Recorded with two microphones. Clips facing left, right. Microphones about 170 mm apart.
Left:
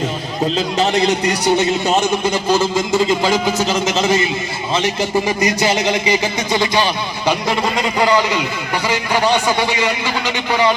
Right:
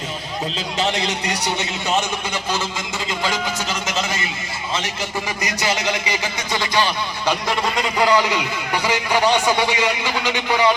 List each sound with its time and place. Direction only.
0.4 s a man's voice: 45° left (ahead or behind); by 10.8 s 10° right (ahead or behind)